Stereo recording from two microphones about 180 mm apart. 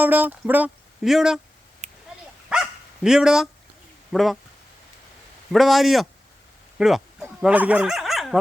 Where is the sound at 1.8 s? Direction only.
40° right (ahead or behind).